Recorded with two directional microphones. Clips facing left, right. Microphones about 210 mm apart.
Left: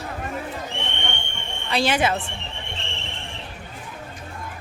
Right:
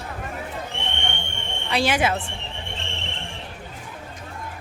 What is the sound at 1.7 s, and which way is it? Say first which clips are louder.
Speech: even; 10° right (ahead or behind).